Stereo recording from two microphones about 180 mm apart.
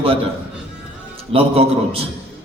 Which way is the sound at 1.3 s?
30° right (ahead or behind).